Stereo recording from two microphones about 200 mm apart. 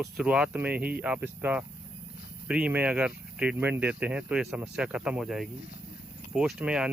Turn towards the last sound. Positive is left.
turn(degrees=-5)  # may be behind; listen again after turning